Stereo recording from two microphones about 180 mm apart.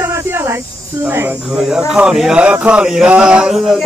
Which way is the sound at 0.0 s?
15° right (ahead or behind).